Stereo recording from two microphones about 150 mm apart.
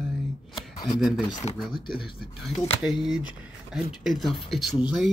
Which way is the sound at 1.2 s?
25° left (ahead or behind).